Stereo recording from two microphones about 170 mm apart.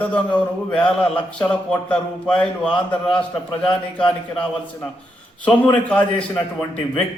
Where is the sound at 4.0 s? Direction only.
5° left (ahead or behind).